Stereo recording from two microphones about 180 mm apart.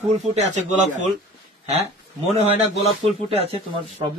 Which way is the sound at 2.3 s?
35° right (ahead or behind).